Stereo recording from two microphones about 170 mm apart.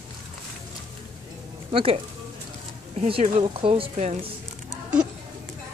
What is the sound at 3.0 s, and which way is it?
A woman's voice, 35° right (ahead or behind).